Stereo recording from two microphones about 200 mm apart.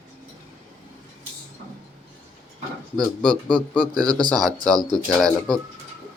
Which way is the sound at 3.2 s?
5° left (ahead or behind).